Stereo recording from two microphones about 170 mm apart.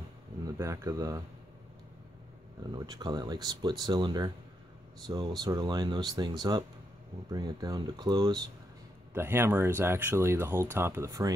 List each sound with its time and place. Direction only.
0.4 s speech: 20° right (ahead or behind)
2.7 s speech: 25° right (ahead or behind)
9.1 s speech: 15° right (ahead or behind)